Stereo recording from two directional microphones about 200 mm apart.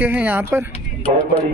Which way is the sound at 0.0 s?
10° right (ahead or behind).